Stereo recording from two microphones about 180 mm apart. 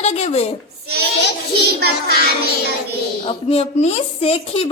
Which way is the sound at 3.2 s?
35° left (ahead or behind).